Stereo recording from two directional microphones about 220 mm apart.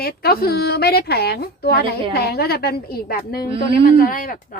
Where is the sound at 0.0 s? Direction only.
45° left (ahead or behind).